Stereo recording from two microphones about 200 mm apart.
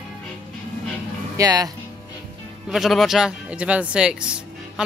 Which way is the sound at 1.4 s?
20° right (ahead or behind).